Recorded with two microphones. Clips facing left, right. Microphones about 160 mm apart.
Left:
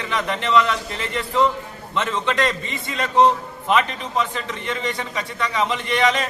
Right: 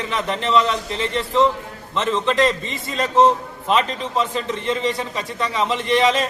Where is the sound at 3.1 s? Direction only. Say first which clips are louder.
Right 1 dB; centre (ahead or behind).